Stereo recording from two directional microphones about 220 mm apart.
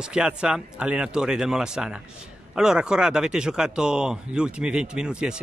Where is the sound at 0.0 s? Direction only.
5° right (ahead or behind).